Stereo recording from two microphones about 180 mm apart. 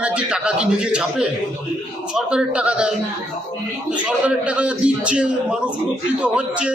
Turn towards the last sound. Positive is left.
turn(degrees=-5)  # may be behind; listen again after turning